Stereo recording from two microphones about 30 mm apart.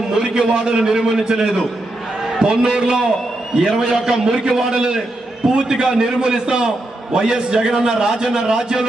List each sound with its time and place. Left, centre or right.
0.1 s a man's voice: right